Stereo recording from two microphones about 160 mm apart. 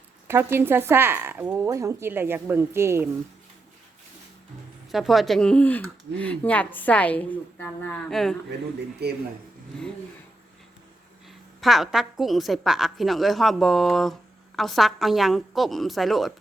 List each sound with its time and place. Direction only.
0.3 s speech: 15° right (ahead or behind)
4.9 s speech: centre (ahead or behind)
9.0 s speech: 90° right
11.6 s a woman's voice: centre (ahead or behind)